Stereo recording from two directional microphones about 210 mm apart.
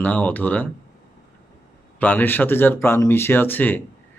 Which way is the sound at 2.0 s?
10° left (ahead or behind).